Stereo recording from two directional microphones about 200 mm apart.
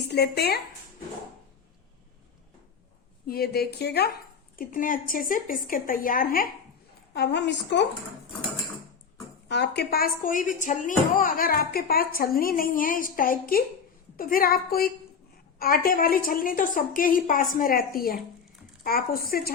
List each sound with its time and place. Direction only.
0.1 s speech: 55° left (ahead or behind)
3.2 s speech: 50° left (ahead or behind)
9.5 s speech: 55° left (ahead or behind)